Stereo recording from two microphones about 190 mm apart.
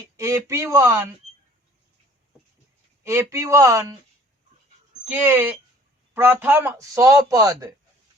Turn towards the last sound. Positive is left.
turn(degrees=-20)  # may be behind; listen again after turning